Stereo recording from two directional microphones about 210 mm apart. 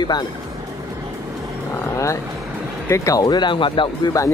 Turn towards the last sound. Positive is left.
turn(degrees=15)  # may be behind; listen again after turning